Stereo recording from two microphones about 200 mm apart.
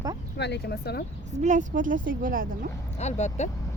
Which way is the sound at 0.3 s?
55° left (ahead or behind).